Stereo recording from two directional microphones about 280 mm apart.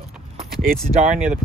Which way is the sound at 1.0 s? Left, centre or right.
Right.